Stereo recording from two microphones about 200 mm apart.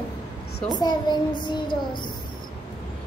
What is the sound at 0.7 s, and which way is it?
A child's voice, 20° left (ahead or behind).